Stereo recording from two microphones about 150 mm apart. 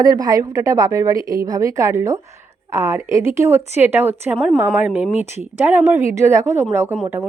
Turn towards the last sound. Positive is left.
turn(degrees=-15)  # may be behind; listen again after turning